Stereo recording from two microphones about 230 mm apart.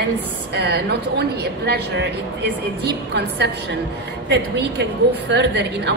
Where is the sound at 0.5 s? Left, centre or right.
Right.